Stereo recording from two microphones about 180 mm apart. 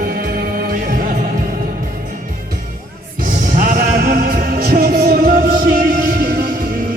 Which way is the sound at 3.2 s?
50° right (ahead or behind).